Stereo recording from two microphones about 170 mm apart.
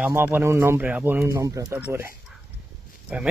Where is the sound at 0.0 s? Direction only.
10° right (ahead or behind).